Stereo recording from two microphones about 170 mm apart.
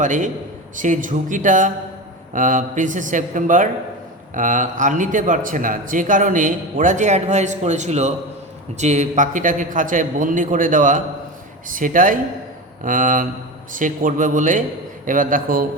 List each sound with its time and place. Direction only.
0.0 s speech: 50° right (ahead or behind)